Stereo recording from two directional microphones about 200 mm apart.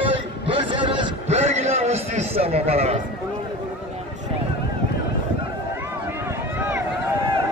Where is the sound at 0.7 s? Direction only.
25° right (ahead or behind).